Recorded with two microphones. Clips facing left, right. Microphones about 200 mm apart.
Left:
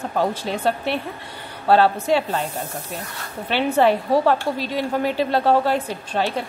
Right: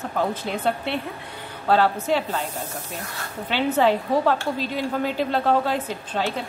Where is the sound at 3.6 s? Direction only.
10° left (ahead or behind).